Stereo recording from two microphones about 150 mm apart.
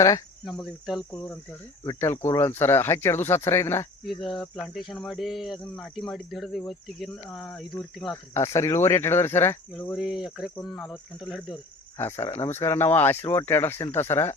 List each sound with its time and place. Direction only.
0.4 s speech: centre (ahead or behind)
1.8 s speech: 20° left (ahead or behind)
4.0 s speech: centre (ahead or behind)
8.1 s speech: 20° left (ahead or behind)
9.9 s speech: 5° right (ahead or behind)
11.9 s speech: 15° left (ahead or behind)